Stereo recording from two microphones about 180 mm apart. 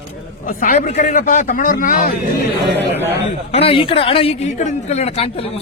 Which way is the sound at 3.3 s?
35° left (ahead or behind).